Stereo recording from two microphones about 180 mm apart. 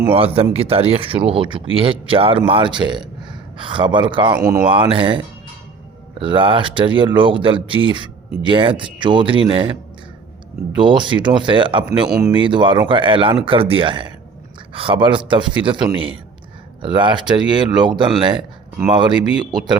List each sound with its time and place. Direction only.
0.1 s a man's voice: 30° right (ahead or behind)
10.8 s speech: 25° right (ahead or behind)